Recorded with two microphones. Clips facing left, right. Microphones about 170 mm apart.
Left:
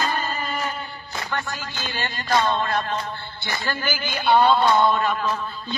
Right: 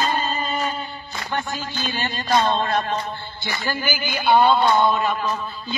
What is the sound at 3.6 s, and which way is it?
A man's voice, 5° right (ahead or behind).